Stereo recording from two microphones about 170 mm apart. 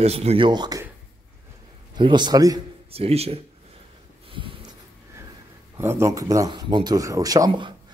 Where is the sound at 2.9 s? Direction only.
35° right (ahead or behind).